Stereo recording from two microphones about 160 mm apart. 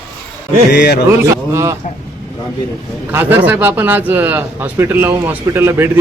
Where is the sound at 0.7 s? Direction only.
90° left.